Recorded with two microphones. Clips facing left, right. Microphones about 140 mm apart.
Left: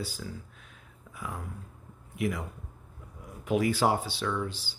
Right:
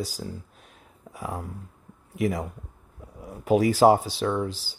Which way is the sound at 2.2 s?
40° right (ahead or behind).